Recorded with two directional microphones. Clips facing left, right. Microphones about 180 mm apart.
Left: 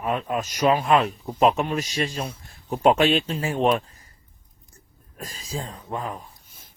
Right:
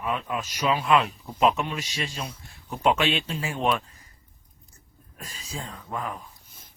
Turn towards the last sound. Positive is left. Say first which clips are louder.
# left 2 dB
turn(degrees=30)  # may be behind; listen again after turning